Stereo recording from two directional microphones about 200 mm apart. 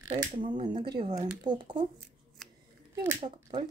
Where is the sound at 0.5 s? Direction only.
35° right (ahead or behind).